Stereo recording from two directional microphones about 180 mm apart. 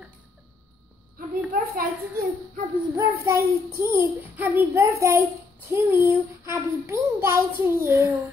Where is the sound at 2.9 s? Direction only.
15° right (ahead or behind).